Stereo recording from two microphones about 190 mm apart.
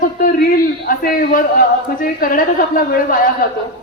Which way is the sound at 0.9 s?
50° left (ahead or behind).